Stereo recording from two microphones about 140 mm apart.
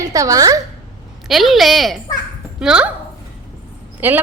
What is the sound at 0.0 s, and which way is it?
Speech, 25° right (ahead or behind).